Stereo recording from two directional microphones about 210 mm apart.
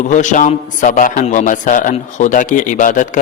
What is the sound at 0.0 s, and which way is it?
A man's voice, 35° left (ahead or behind).